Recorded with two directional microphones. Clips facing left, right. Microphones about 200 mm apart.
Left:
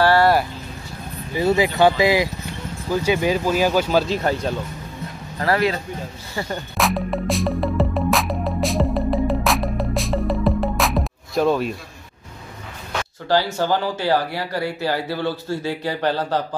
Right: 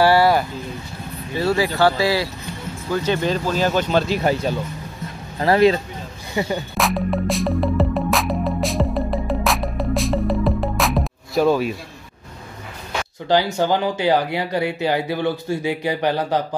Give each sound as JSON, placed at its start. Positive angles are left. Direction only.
{"t": 0.0, "sound": "vehicle", "side_deg": -10}
{"t": 1.3, "sound": "speech", "side_deg": 20}
{"t": 4.1, "sound": "speech", "side_deg": -10}
{"t": 5.4, "sound": "speech", "side_deg": -25}
{"t": 6.5, "sound": "music", "side_deg": 0}
{"t": 13.3, "sound": "speech", "side_deg": -15}